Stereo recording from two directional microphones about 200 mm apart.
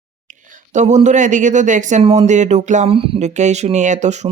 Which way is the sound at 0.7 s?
35° right (ahead or behind).